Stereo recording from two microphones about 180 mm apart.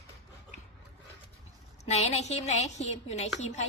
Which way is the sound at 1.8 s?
35° left (ahead or behind).